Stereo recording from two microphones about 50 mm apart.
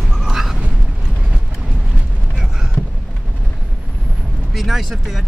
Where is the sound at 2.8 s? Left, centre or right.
Left.